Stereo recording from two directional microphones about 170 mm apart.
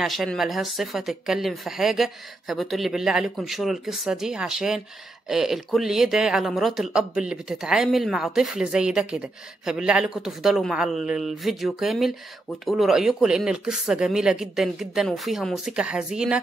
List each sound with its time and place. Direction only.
0.0 s speech: centre (ahead or behind)